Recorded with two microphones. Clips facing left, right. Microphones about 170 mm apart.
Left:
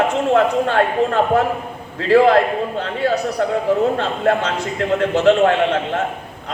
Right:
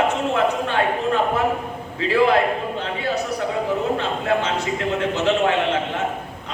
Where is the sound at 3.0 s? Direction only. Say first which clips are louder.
Left 7 dB; 55° left (ahead or behind).